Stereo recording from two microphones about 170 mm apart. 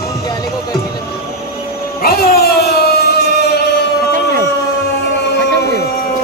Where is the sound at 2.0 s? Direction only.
65° left (ahead or behind).